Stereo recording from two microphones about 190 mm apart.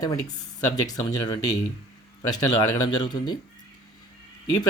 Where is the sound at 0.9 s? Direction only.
20° left (ahead or behind).